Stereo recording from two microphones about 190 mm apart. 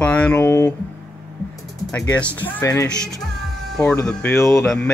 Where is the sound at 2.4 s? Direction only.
15° left (ahead or behind).